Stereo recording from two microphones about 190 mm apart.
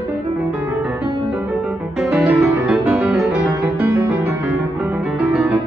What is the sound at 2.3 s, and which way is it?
Music, centre (ahead or behind).